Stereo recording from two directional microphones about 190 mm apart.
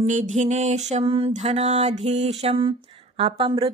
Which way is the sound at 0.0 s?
40° right (ahead or behind).